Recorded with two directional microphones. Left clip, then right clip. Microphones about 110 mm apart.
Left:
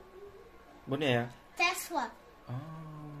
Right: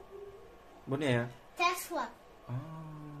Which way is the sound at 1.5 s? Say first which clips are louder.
Left 1 dB; 45° left (ahead or behind).